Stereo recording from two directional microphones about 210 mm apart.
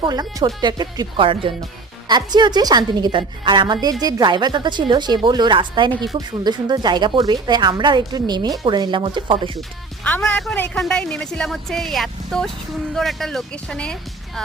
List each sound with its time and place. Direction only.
0.0 s a woman's voice: 20° right (ahead or behind)
9.6 s speech: 5° left (ahead or behind)